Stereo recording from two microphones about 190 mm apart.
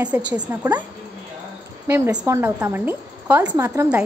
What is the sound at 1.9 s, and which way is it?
Speech, 15° right (ahead or behind).